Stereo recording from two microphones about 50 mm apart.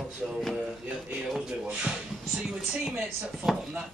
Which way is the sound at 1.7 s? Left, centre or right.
Right.